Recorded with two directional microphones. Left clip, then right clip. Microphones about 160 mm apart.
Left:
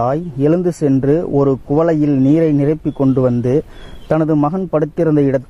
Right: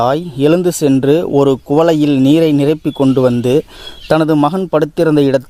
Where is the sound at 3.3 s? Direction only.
40° right (ahead or behind).